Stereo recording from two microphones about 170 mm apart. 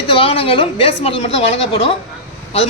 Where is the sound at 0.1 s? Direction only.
30° left (ahead or behind).